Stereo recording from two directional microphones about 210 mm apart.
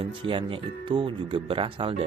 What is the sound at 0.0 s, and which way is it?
Speech, 25° right (ahead or behind).